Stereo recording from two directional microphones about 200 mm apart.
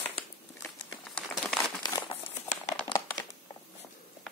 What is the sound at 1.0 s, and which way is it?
Crumpling, centre (ahead or behind).